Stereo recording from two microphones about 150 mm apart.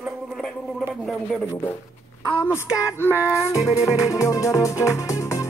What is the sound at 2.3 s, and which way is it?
Speech, 15° left (ahead or behind).